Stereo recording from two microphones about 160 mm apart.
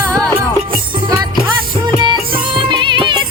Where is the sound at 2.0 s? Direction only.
30° right (ahead or behind).